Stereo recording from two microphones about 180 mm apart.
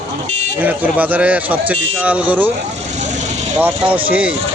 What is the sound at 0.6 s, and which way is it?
Speech, 10° right (ahead or behind).